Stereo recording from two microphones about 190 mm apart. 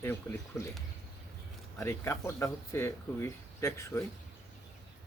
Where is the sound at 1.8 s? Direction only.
15° left (ahead or behind).